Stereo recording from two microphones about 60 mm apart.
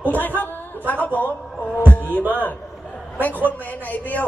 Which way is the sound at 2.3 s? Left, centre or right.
Left.